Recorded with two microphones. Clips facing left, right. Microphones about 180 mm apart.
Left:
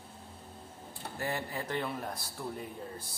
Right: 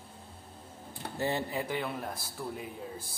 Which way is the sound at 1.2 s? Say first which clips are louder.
Right 4 dB; 25° right (ahead or behind).